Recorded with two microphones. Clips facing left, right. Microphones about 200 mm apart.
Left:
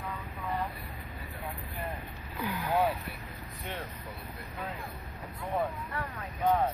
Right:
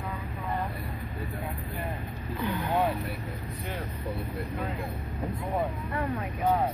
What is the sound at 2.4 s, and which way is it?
Vehicle, centre (ahead or behind).